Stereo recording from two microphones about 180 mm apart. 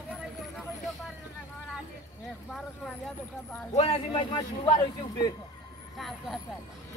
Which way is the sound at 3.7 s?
35° left (ahead or behind).